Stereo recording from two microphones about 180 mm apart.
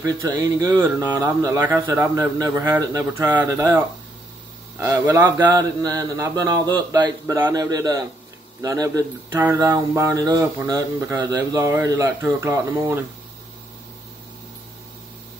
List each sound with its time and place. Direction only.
0.0 s a man's voice: 20° right (ahead or behind)